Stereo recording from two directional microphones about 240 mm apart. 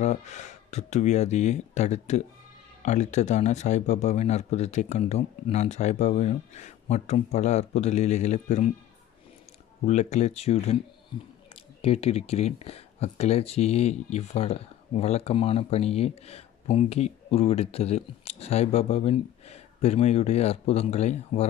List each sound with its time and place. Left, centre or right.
0.0 s speech: left
9.8 s speech: left